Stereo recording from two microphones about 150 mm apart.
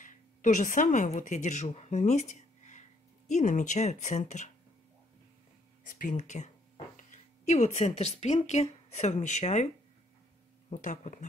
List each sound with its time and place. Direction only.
0.0 s a woman's voice: 55° left (ahead or behind)
5.9 s speech: 65° left (ahead or behind)
10.7 s speech: 55° left (ahead or behind)